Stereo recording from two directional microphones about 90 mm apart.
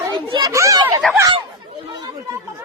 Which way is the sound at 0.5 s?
35° right (ahead or behind).